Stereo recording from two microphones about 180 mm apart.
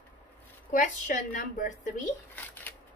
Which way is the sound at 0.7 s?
45° left (ahead or behind).